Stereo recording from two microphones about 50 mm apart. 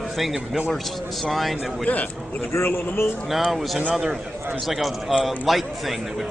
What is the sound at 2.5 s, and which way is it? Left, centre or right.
Speech, left.